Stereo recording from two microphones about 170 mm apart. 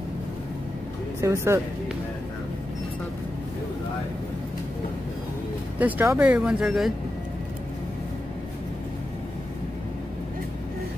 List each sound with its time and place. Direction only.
1.2 s speech: 15° right (ahead or behind)
5.8 s speech: 10° right (ahead or behind)